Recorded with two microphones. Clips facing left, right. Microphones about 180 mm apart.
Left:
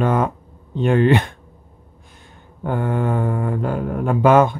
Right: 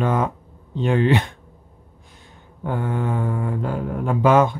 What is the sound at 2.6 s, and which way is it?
Speech, 55° left (ahead or behind).